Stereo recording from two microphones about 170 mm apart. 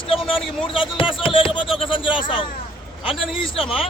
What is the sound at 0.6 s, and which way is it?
Speech, 30° left (ahead or behind).